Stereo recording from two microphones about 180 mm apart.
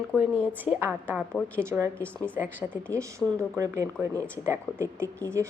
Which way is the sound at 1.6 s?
15° right (ahead or behind).